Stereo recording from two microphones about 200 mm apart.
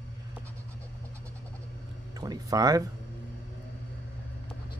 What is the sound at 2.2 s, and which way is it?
Speech, 20° right (ahead or behind).